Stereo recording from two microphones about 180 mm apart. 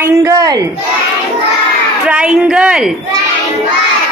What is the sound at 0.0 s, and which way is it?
Speech, 20° right (ahead or behind).